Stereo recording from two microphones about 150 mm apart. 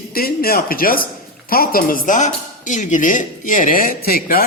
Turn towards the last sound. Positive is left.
turn(degrees=80)